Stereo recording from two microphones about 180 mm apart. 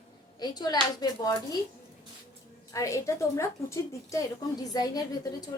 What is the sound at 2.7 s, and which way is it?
A woman's voice, 15° left (ahead or behind).